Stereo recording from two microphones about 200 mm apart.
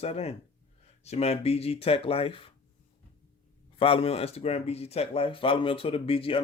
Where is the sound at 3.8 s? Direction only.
30° left (ahead or behind).